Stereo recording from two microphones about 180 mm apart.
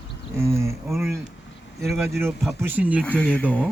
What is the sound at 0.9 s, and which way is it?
Speech, centre (ahead or behind).